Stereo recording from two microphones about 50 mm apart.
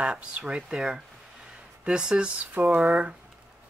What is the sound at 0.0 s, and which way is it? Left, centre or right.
Speech, centre.